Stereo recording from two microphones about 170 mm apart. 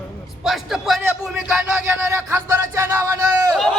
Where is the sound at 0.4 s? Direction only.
Centre (ahead or behind).